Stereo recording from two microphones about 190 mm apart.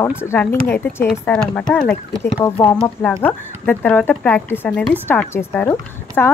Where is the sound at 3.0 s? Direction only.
10° left (ahead or behind).